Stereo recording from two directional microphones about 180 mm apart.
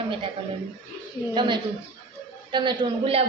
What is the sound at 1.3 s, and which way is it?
A woman's voice, 25° right (ahead or behind).